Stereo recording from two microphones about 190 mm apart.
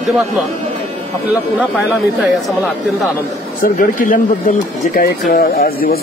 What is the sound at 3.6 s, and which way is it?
Speech, 45° left (ahead or behind).